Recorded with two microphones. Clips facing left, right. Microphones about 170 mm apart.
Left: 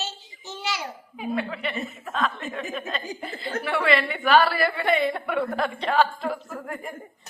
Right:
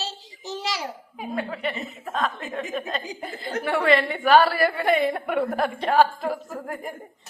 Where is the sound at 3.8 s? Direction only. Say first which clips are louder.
Right 3 dB; 40° right (ahead or behind).